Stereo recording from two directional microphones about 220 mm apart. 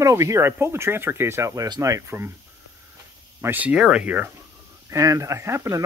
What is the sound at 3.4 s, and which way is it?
Speech, 5° right (ahead or behind).